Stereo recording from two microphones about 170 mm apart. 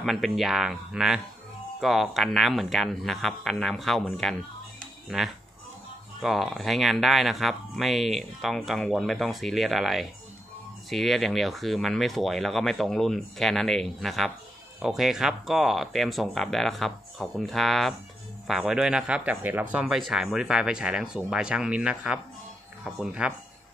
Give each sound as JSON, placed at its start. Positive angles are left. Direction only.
{"t": 0.0, "sound": "speech", "side_deg": 0}